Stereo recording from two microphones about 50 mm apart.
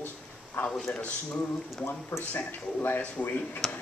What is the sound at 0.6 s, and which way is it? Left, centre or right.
Speech, left.